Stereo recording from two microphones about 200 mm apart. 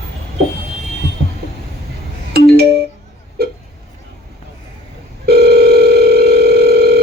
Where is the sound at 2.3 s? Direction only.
50° right (ahead or behind).